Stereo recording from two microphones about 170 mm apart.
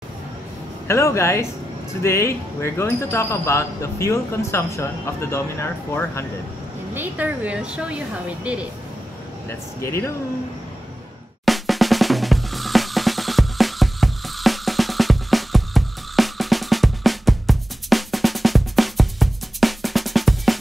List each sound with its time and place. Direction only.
0.8 s speech: 15° left (ahead or behind)
6.9 s a woman's voice: 10° right (ahead or behind)
9.5 s speech: 15° left (ahead or behind)
11.4 s drum: centre (ahead or behind)